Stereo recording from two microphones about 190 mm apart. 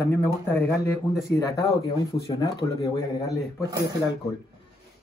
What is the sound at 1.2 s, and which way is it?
Speech, 20° left (ahead or behind).